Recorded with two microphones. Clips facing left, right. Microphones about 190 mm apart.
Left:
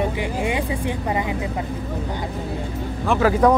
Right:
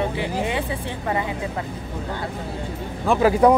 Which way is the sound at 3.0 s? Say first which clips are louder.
Right 1 dB; 15° right (ahead or behind).